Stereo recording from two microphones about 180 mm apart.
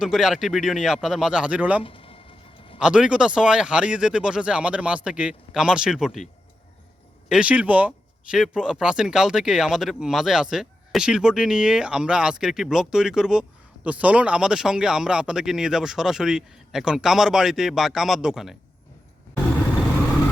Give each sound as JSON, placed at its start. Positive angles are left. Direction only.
{"t": 0.0, "sound": "speech", "side_deg": -5}
{"t": 1.8, "sound": "a sound", "side_deg": 30}
{"t": 2.7, "sound": "speech", "side_deg": -5}
{"t": 7.3, "sound": "speech", "side_deg": -5}